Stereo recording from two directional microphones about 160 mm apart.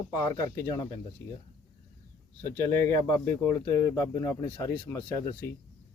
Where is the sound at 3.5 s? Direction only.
15° left (ahead or behind).